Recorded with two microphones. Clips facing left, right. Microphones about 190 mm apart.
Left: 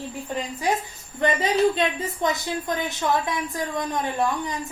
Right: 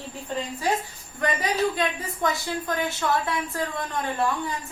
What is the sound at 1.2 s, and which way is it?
Speech, 25° left (ahead or behind).